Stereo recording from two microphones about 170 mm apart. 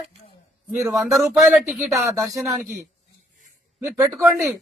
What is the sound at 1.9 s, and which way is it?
Speech, 20° right (ahead or behind).